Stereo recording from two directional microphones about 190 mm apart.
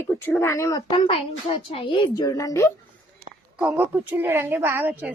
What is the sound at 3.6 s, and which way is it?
A woman's voice, 10° right (ahead or behind).